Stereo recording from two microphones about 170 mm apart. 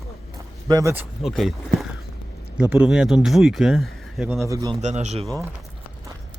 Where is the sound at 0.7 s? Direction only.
20° right (ahead or behind).